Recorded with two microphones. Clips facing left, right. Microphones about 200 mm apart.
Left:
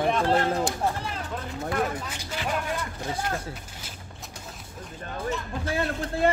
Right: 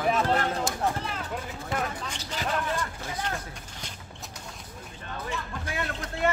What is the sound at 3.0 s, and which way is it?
Speech, 35° left (ahead or behind).